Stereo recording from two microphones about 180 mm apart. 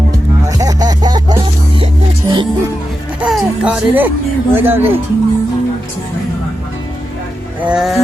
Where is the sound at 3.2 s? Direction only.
5° right (ahead or behind).